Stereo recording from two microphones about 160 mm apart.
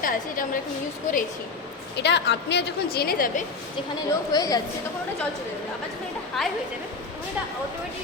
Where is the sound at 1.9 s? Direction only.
90° left; by 3.4 s 65° left (ahead or behind).